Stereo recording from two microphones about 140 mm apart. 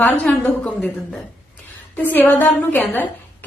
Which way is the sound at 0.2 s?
10° left (ahead or behind).